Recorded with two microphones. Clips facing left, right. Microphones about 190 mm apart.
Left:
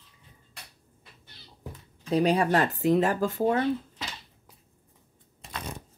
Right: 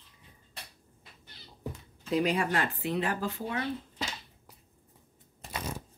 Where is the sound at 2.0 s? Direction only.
35° left (ahead or behind).